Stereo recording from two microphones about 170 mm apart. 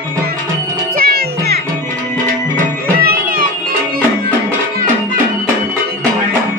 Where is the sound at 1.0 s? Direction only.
70° right (ahead or behind).